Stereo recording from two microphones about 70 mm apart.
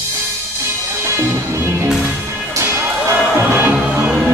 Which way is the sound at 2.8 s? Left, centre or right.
Right.